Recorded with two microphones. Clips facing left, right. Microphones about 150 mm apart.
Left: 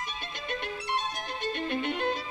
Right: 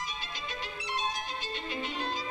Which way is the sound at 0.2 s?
60° left (ahead or behind).